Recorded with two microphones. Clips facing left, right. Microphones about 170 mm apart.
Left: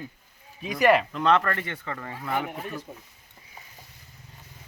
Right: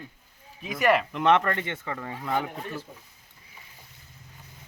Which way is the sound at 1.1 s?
20° right (ahead or behind).